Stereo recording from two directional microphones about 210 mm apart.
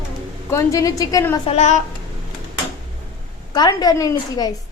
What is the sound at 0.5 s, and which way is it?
Speech, 15° left (ahead or behind).